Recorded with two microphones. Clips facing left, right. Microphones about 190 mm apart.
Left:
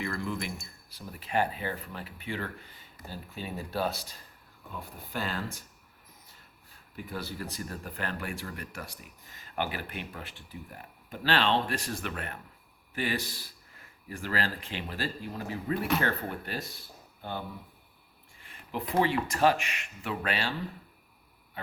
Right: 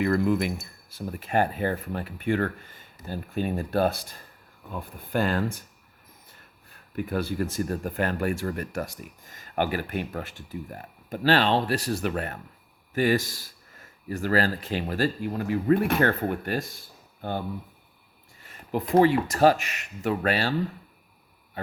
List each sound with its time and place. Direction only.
0.0 s speech: 50° right (ahead or behind)
6.7 s speech: 60° right (ahead or behind)
18.4 s speech: 45° right (ahead or behind)